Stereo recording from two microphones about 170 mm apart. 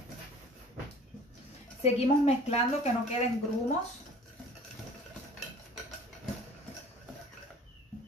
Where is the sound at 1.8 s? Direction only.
40° left (ahead or behind).